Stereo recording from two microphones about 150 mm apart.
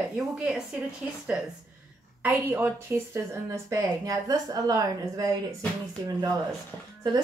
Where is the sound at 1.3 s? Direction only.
10° right (ahead or behind).